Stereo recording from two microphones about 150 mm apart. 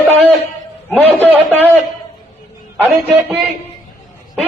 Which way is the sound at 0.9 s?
10° left (ahead or behind).